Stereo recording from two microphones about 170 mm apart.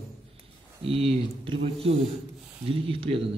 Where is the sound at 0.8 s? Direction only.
35° right (ahead or behind).